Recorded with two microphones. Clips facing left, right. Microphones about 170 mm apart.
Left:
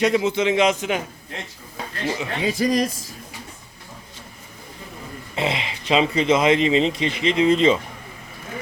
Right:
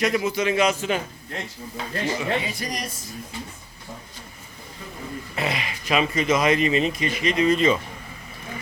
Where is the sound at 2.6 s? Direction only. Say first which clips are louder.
Left 11 dB; 90° left.